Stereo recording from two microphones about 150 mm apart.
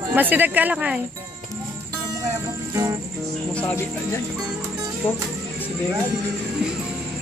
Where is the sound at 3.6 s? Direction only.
20° left (ahead or behind).